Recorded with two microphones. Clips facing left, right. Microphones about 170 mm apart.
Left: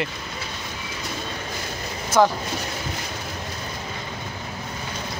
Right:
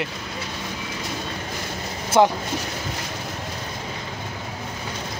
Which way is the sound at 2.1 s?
25° right (ahead or behind).